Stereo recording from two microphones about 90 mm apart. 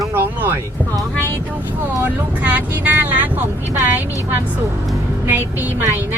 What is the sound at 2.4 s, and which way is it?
Speech, 15° right (ahead or behind).